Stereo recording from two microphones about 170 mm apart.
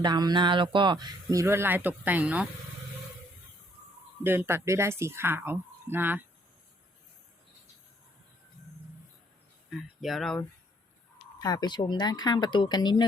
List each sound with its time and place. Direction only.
0.0 s speech: 25° right (ahead or behind); by 2.5 s 10° right (ahead or behind)
4.2 s a woman's voice: 15° right (ahead or behind)
9.6 s speech: centre (ahead or behind)
11.3 s speech: 20° left (ahead or behind)